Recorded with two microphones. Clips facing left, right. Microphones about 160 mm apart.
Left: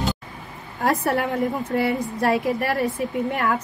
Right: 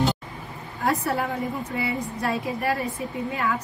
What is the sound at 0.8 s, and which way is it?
Speech, 70° left (ahead or behind).